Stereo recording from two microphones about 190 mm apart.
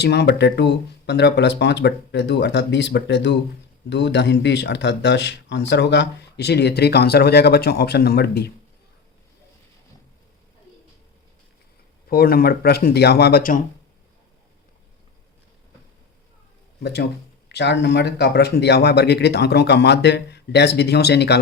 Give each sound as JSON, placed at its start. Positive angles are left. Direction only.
{"t": 0.0, "sound": "speech", "side_deg": 60}
{"t": 12.0, "sound": "speech", "side_deg": 50}
{"t": 16.8, "sound": "speech", "side_deg": 60}